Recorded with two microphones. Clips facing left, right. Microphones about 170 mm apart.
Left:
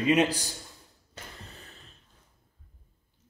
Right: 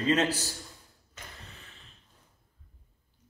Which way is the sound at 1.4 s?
35° left (ahead or behind).